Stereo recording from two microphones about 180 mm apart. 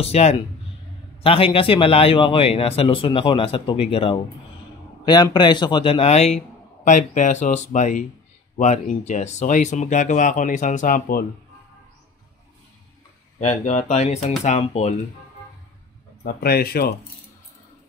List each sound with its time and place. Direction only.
0.0 s speech: 35° left (ahead or behind); by 11.2 s 50° left (ahead or behind)
13.4 s speech: 40° left (ahead or behind)
16.3 s speech: 60° left (ahead or behind)